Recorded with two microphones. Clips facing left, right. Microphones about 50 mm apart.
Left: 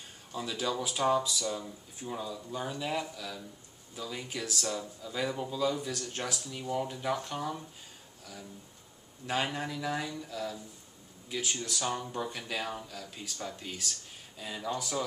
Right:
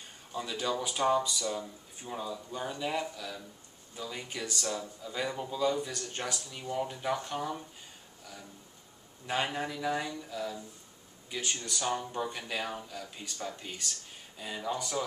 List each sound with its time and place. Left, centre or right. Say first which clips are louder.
0.3 s speech: even; centre
9.2 s speech: even; centre